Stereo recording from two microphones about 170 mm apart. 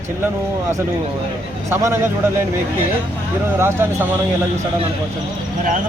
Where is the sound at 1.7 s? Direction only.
15° right (ahead or behind).